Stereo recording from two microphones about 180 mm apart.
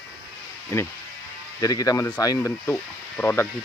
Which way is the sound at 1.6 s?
20° left (ahead or behind).